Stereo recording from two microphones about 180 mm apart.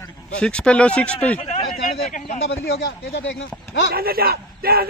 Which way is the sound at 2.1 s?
45° left (ahead or behind).